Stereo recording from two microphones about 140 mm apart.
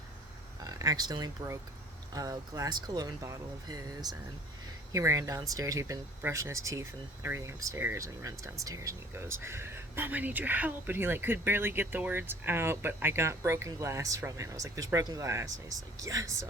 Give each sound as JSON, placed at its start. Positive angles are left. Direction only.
{"t": 0.6, "sound": "speech", "side_deg": -25}